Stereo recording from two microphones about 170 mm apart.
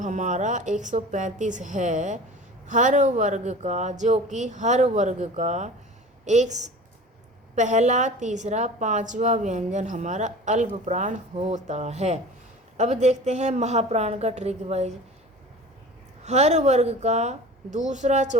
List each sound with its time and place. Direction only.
0.0 s a woman's voice: 45° right (ahead or behind)
16.2 s a woman's voice: 40° right (ahead or behind)